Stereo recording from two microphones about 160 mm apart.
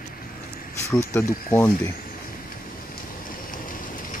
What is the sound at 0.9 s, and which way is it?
Speech, 15° left (ahead or behind).